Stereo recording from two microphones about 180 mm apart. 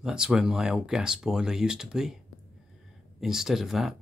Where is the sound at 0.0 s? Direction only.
5° right (ahead or behind).